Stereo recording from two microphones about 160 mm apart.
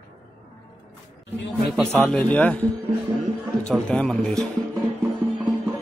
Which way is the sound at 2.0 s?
10° left (ahead or behind).